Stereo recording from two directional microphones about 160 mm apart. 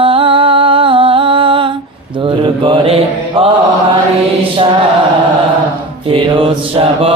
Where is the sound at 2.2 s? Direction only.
30° right (ahead or behind).